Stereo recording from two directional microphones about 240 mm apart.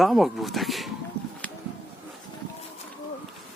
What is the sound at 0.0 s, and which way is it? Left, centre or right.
Speech, centre.